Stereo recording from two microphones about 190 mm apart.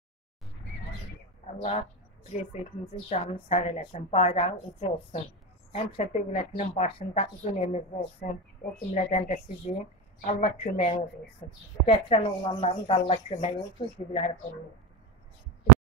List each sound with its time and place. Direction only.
1.6 s speech: 35° left (ahead or behind)
3.1 s speech: 30° left (ahead or behind)